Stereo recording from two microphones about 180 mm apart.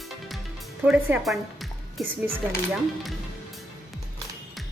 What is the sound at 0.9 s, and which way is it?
Speech, 5° right (ahead or behind).